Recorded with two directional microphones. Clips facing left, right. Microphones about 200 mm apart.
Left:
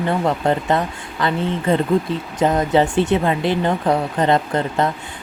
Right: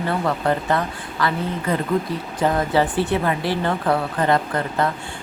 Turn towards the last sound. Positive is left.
turn(degrees=25)  # may be behind; listen again after turning